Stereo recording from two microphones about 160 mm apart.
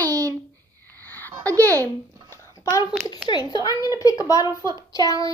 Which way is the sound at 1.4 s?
20° right (ahead or behind).